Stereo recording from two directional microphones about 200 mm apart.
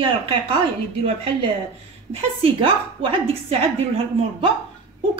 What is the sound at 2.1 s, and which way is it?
A woman's voice, 25° right (ahead or behind).